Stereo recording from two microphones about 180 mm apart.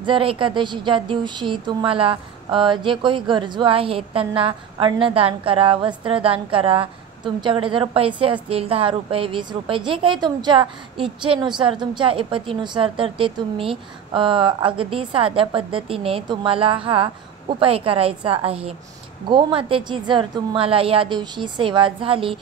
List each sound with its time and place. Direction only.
0.0 s a woman's voice: 30° right (ahead or behind)